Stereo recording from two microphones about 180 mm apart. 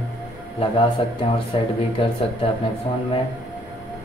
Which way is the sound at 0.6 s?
30° left (ahead or behind).